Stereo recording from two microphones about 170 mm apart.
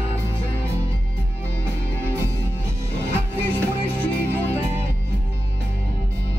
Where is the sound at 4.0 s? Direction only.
10° left (ahead or behind).